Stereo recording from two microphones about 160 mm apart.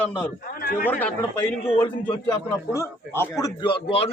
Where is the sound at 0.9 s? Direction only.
10° left (ahead or behind).